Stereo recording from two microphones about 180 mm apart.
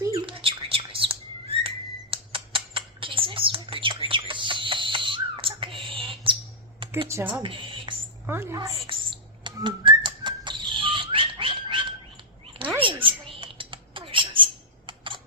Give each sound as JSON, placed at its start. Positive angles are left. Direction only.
{"t": 0.1, "sound": "bird", "side_deg": -30}
{"t": 6.8, "sound": "computer keyboard", "side_deg": -30}
{"t": 7.3, "sound": "a sound", "side_deg": -25}
{"t": 8.3, "sound": "a woman's voice", "side_deg": -15}
{"t": 8.9, "sound": "whistle", "side_deg": -25}
{"t": 12.8, "sound": "typing", "side_deg": -30}